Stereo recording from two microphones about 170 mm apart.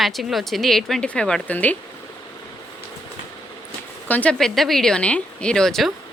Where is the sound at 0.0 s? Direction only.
Centre (ahead or behind).